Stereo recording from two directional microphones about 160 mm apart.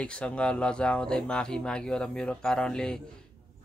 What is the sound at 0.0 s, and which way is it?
Speech, 5° left (ahead or behind).